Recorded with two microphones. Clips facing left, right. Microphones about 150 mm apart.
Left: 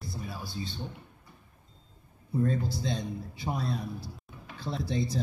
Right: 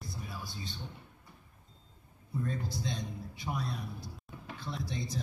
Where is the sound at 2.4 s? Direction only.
30° left (ahead or behind).